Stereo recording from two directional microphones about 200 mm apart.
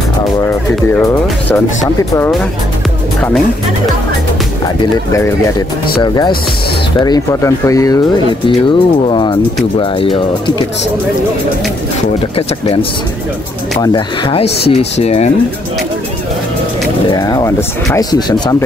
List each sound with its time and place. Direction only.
0.8 s speech: 5° left (ahead or behind)
6.0 s speech: 20° left (ahead or behind)
13.7 s speech: 20° left (ahead or behind)
17.1 s speech: 15° left (ahead or behind)